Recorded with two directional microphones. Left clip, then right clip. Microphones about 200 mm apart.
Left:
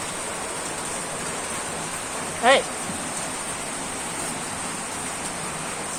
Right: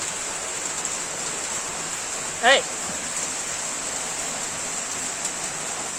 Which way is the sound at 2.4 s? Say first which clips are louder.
Even; 10° right (ahead or behind).